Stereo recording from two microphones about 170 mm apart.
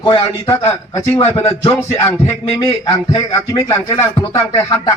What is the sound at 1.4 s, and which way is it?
Music, 35° left (ahead or behind).